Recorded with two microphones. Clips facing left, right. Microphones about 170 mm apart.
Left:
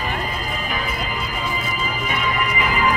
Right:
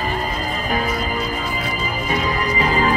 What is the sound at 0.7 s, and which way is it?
Music, 40° right (ahead or behind).